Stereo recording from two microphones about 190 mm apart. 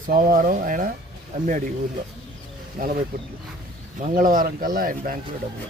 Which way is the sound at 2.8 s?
50° right (ahead or behind).